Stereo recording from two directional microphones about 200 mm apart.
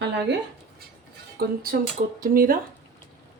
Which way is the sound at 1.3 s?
45° right (ahead or behind).